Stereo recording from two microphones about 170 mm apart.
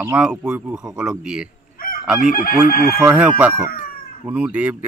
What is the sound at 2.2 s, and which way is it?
Chicken, 55° left (ahead or behind).